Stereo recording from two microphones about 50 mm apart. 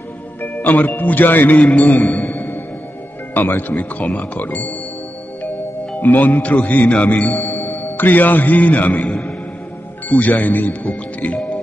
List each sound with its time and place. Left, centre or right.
0.4 s music: left
0.9 s speech: left
1.6 s a man's voice: left
3.3 s speech: left
5.9 s speech: left
7.3 s a man's voice: left